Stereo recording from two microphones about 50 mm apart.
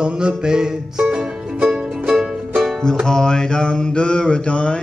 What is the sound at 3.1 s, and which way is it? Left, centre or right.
Mantra, centre.